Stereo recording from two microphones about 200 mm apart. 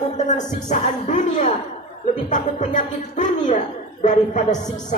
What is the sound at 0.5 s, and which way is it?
Speech, 40° left (ahead or behind).